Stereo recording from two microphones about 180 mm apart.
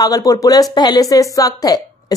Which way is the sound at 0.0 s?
20° left (ahead or behind).